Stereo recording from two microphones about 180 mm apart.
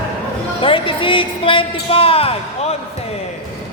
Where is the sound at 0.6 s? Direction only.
30° left (ahead or behind).